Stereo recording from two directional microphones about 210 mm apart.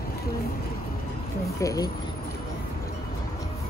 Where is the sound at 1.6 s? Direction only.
15° left (ahead or behind).